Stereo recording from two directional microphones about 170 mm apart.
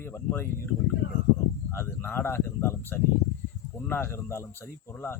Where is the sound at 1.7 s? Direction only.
15° left (ahead or behind).